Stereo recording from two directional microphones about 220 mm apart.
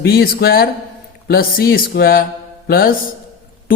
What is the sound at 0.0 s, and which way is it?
A man's voice, 45° left (ahead or behind).